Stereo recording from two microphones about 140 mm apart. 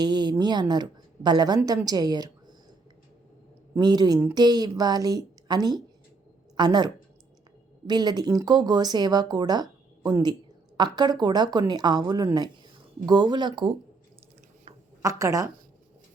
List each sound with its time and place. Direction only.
0.0 s speech: 30° right (ahead or behind)
3.8 s speech: 30° right (ahead or behind)
15.0 s speech: 25° right (ahead or behind)